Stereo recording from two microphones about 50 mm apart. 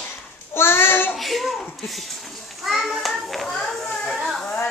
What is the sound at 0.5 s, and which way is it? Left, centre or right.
Child singing, left.